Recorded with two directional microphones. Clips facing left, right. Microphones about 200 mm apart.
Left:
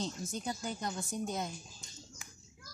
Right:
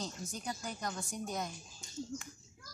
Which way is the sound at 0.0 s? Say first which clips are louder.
Left 4 dB; 25° left (ahead or behind).